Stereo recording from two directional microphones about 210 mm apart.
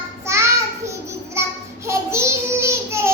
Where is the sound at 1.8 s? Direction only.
10° right (ahead or behind).